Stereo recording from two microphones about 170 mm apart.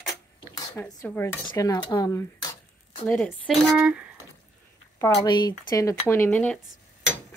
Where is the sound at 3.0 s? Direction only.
5° left (ahead or behind).